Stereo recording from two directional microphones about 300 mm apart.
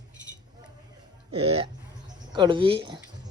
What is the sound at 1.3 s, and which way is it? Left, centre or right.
Speech, centre.